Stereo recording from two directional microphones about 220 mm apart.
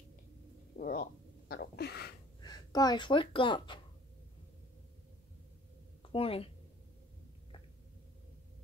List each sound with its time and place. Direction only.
0.7 s a sound: 40° left (ahead or behind)
2.4 s speech: 20° left (ahead or behind)
6.0 s speech: 25° left (ahead or behind)